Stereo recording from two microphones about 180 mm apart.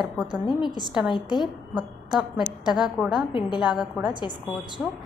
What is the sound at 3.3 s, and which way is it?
Speech, 25° left (ahead or behind).